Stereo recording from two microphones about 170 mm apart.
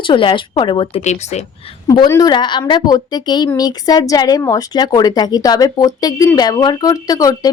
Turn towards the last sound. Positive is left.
turn(degrees=20)  # may be behind; listen again after turning